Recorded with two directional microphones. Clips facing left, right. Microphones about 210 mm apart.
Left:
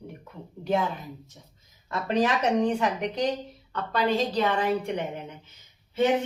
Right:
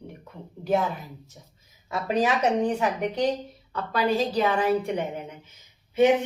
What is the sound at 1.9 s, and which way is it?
A woman's voice, 10° right (ahead or behind).